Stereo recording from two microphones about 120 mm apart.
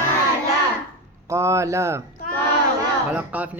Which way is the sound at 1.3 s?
25° right (ahead or behind).